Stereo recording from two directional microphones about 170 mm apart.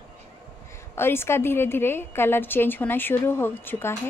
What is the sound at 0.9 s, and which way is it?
A woman's voice, 15° left (ahead or behind).